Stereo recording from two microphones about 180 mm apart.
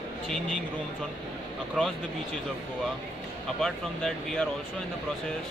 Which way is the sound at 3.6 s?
Centre (ahead or behind).